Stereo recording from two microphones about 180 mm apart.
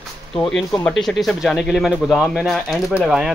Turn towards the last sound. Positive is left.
turn(degrees=-5)  # may be behind; listen again after turning